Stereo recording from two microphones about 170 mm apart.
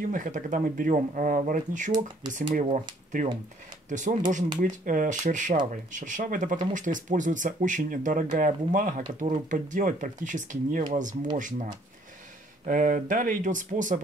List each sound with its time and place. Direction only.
0.1 s speech: 50° right (ahead or behind)